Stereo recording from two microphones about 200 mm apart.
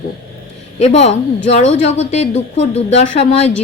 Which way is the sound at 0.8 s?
30° left (ahead or behind).